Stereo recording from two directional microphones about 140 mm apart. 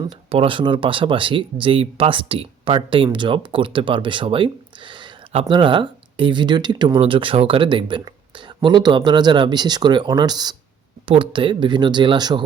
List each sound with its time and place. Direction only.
0.3 s speech: 40° right (ahead or behind)
11.0 s speech: 40° right (ahead or behind)